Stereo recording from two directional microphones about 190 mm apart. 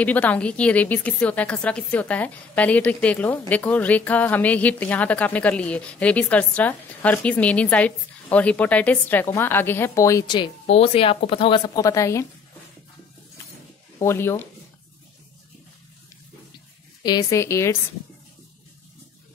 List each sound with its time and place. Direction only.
0.0 s a woman's voice: 10° left (ahead or behind)
13.9 s speech: 15° left (ahead or behind)
17.0 s a woman's voice: 20° left (ahead or behind)